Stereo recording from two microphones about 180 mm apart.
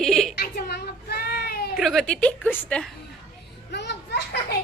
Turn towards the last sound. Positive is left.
turn(degrees=70)  # may be behind; listen again after turning